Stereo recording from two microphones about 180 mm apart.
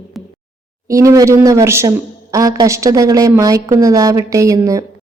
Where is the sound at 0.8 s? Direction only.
15° right (ahead or behind).